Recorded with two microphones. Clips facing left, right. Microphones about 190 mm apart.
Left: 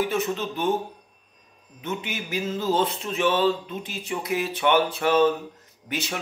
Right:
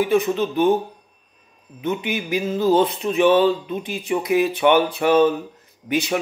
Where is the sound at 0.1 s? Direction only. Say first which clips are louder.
Right 7 dB; 15° right (ahead or behind).